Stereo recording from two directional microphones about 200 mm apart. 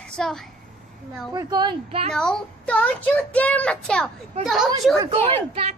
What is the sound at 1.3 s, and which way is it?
Speech, 20° right (ahead or behind).